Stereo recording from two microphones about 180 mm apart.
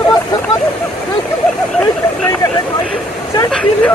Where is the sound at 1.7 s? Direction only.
5° left (ahead or behind).